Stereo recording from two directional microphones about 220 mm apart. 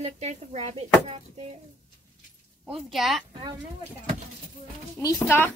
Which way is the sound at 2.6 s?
Centre (ahead or behind).